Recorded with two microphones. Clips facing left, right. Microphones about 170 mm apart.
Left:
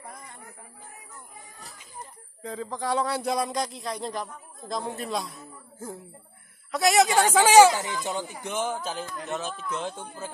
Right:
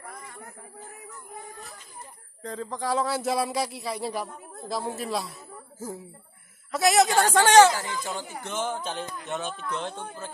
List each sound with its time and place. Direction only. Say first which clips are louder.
2.4 s speech: even; centre (ahead or behind)
7.7 s speech: left 2 dB; 20° left (ahead or behind)
8.5 s a sound: even; 10° left (ahead or behind)
9.2 s speech: even; centre (ahead or behind)